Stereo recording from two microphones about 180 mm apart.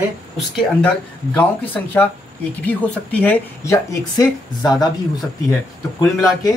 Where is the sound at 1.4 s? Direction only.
5° left (ahead or behind).